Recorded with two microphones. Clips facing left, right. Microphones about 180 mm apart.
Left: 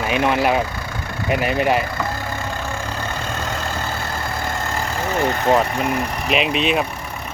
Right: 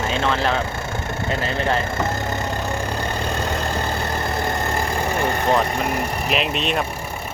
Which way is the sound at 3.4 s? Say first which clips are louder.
Right 2 dB; 35° right (ahead or behind).